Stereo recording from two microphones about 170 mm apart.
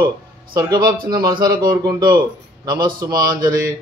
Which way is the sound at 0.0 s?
25° right (ahead or behind).